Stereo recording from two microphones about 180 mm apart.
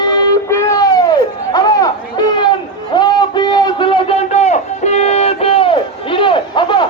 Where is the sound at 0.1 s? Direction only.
20° left (ahead or behind).